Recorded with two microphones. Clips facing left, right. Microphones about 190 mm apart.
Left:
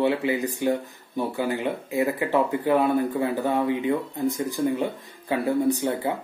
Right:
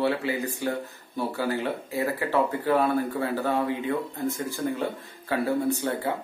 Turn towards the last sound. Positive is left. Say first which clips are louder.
# left 3 dB
turn(degrees=15)  # may be behind; listen again after turning